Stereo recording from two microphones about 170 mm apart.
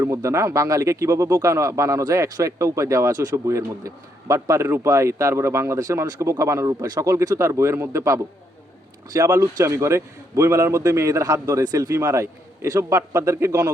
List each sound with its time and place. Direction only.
0.0 s a man's voice: 15° right (ahead or behind)